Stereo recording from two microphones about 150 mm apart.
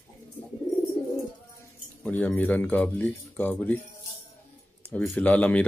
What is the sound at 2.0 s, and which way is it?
Speech, 10° left (ahead or behind).